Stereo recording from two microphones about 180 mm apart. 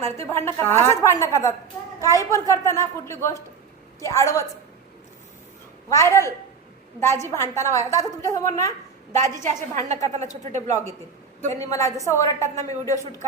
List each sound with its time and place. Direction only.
0.0 s a woman's voice: 15° left (ahead or behind)
5.9 s a woman's voice: 15° left (ahead or behind)
9.9 s a woman's voice: 40° right (ahead or behind)
10.7 s a woman's voice: 15° left (ahead or behind)